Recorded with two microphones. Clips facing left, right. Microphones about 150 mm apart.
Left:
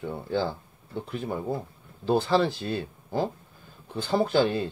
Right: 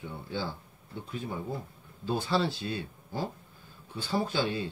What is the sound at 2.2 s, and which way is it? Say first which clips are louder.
Speech: left 5 dB; 50° left (ahead or behind).